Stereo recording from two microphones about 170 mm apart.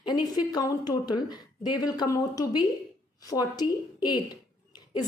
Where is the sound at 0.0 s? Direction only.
25° left (ahead or behind).